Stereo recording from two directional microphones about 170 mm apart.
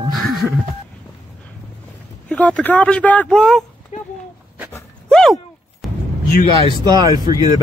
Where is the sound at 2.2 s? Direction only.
5° left (ahead or behind).